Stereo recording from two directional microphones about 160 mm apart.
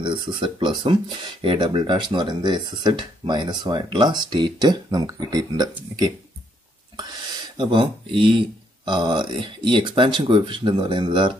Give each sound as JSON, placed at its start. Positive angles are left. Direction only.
{"t": 0.0, "sound": "speech", "side_deg": -30}